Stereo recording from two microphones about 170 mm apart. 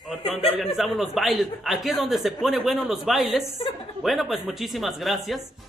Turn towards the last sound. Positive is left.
turn(degrees=0)  # may be behind; listen again after turning